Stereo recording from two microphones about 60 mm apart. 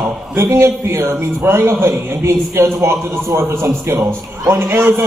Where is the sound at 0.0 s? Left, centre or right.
Right.